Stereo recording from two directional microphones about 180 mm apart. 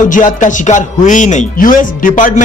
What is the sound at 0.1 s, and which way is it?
Speech, 45° left (ahead or behind).